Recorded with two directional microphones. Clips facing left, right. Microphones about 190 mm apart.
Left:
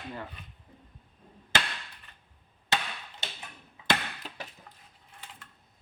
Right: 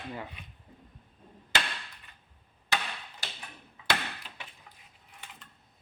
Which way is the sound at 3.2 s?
20° left (ahead or behind).